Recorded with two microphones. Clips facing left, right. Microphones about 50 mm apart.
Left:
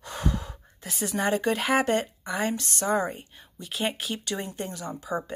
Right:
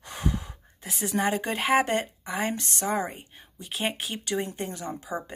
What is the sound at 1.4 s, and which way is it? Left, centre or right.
Speech, centre.